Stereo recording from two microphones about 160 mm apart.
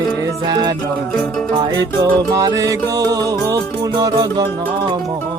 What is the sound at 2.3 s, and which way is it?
Music, 20° right (ahead or behind).